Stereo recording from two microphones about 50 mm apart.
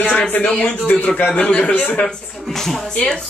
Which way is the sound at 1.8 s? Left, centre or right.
Left.